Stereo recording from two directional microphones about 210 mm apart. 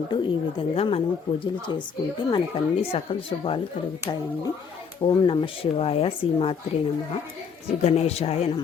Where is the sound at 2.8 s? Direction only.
25° left (ahead or behind).